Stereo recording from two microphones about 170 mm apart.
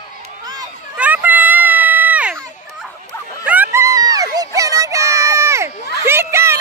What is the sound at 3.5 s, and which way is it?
Dog, 10° right (ahead or behind).